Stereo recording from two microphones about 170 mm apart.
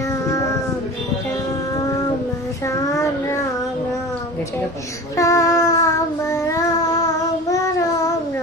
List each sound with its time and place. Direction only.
2.9 s child singing: 15° left (ahead or behind)
5.1 s child singing: 20° left (ahead or behind)